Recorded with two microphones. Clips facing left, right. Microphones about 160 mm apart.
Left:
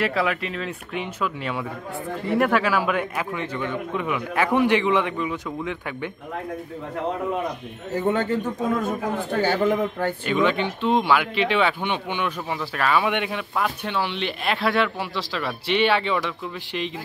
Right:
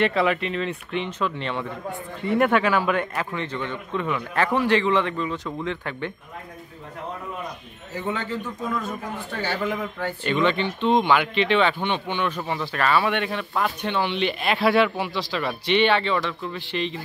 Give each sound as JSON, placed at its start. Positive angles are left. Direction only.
{"t": 0.0, "sound": "a man's voice", "side_deg": 0}
{"t": 7.9, "sound": "speech", "side_deg": 50}
{"t": 10.2, "sound": "a man's voice", "side_deg": 5}